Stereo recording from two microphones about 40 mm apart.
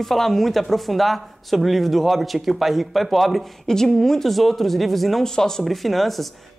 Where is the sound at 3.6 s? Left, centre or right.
Centre.